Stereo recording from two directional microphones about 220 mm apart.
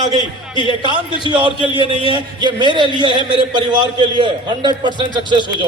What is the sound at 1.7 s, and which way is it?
Speech, 25° left (ahead or behind).